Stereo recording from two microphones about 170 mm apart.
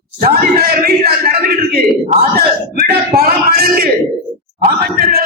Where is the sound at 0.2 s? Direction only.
60° right (ahead or behind).